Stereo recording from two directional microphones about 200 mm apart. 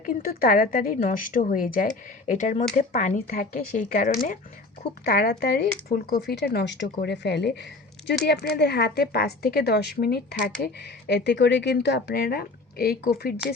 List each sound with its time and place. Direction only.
0.0 s speech: 45° left (ahead or behind)